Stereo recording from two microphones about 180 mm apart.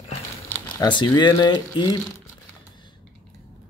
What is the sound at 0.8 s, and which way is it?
Speech, 25° left (ahead or behind).